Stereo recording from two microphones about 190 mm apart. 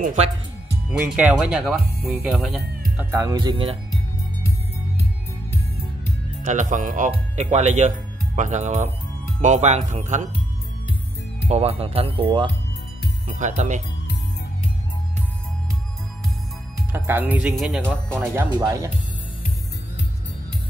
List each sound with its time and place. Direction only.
0.0 s speech: 40° right (ahead or behind)
0.8 s speech: 5° right (ahead or behind)
3.1 s speech: 15° right (ahead or behind)
6.4 s speech: 40° right (ahead or behind)
11.4 s speech: 35° right (ahead or behind)
13.3 s speech: 40° right (ahead or behind)
16.9 s speech: 10° right (ahead or behind)